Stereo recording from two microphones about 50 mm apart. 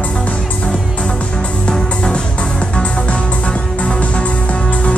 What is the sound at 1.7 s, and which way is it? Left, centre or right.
Music, centre.